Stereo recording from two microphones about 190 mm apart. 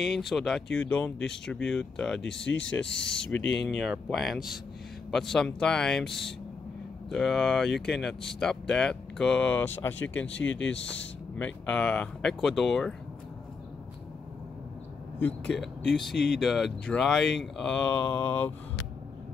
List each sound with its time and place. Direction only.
0.0 s speech: centre (ahead or behind)
10.4 s speech: 80° left
11.3 s speech: 5° left (ahead or behind)
15.4 s speech: centre (ahead or behind)